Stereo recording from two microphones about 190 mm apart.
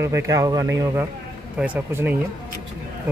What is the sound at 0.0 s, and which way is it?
A man's voice, 15° right (ahead or behind).